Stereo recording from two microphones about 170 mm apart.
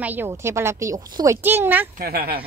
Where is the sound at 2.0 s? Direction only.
65° right (ahead or behind).